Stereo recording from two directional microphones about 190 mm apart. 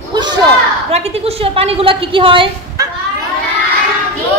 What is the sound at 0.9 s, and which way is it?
A woman's voice, 30° right (ahead or behind).